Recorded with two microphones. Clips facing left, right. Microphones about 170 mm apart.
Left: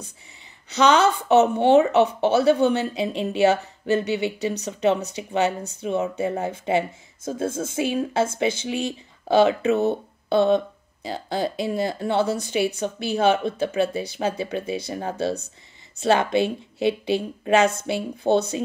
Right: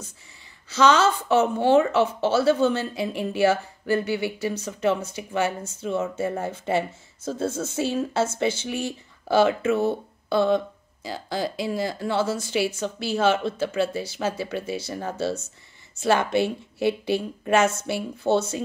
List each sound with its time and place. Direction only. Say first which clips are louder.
0.7 s a woman's voice: left 1 dB; 20° left (ahead or behind)
7.2 s a woman's voice: left 1 dB; 50° left (ahead or behind)
7.7 s speech: left 3 dB; 10° left (ahead or behind)
16.0 s speech: left 2 dB; 20° left (ahead or behind)